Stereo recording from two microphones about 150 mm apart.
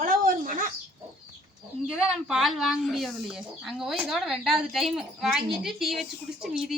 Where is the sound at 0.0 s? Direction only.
65° right (ahead or behind).